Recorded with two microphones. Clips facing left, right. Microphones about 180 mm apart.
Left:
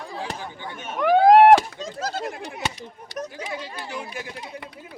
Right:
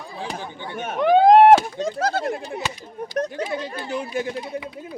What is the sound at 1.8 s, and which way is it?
Speech, 60° right (ahead or behind).